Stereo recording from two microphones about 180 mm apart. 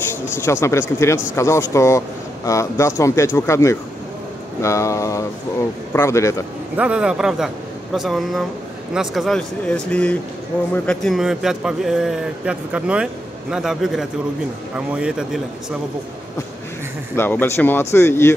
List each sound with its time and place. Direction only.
0.4 s speech: 15° left (ahead or behind)
6.8 s a man's voice: 5° right (ahead or behind)
17.1 s speech: 10° left (ahead or behind)